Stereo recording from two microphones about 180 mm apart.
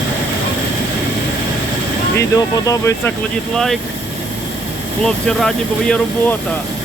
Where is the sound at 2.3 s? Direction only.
15° left (ahead or behind).